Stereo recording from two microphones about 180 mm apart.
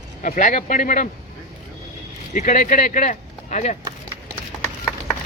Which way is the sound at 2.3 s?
45° left (ahead or behind).